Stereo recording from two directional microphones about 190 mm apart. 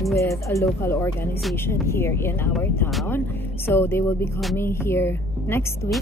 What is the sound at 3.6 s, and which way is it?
Speech, 10° left (ahead or behind).